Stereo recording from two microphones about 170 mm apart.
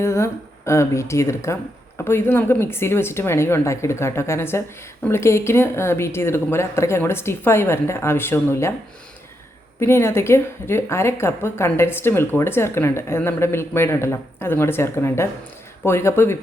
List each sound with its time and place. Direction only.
0.0 s a woman's voice: 15° left (ahead or behind)
9.8 s a woman's voice: 15° left (ahead or behind)